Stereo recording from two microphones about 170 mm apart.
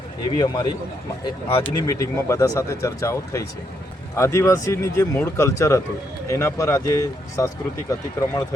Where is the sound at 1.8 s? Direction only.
20° left (ahead or behind).